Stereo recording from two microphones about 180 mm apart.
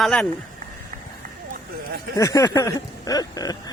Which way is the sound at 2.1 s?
20° left (ahead or behind).